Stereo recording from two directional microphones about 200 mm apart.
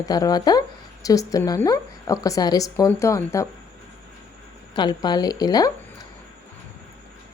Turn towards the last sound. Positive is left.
turn(degrees=20)  # may be behind; listen again after turning